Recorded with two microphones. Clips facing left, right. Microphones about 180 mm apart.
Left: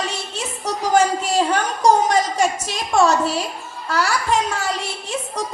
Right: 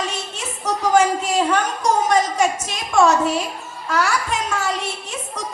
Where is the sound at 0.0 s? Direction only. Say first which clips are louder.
Left 1 dB; 35° left (ahead or behind).